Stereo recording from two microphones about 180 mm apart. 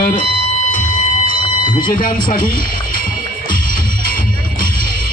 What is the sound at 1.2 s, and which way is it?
Alarm, 25° left (ahead or behind).